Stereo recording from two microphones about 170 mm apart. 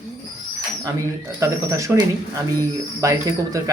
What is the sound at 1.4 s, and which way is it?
Speech, 15° right (ahead or behind).